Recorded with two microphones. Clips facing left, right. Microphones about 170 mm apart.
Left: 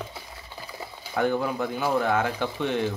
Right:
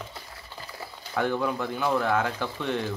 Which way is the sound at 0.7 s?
15° left (ahead or behind).